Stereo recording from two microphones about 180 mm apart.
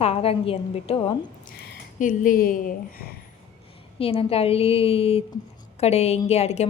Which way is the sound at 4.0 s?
30° left (ahead or behind).